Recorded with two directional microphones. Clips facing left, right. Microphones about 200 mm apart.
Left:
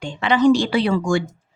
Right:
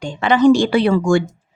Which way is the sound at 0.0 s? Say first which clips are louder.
Right 3 dB; 45° right (ahead or behind).